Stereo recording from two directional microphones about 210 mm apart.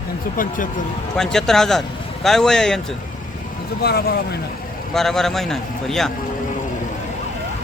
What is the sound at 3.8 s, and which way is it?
Speech, 50° left (ahead or behind).